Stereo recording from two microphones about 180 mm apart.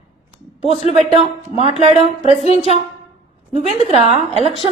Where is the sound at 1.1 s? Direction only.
30° right (ahead or behind).